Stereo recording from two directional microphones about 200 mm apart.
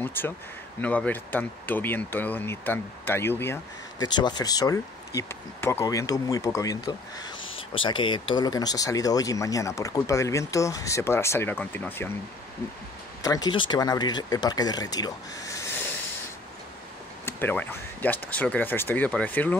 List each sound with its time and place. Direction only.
0.0 s speech: 10° left (ahead or behind)
13.2 s speech: 20° left (ahead or behind)
17.2 s speech: 10° left (ahead or behind)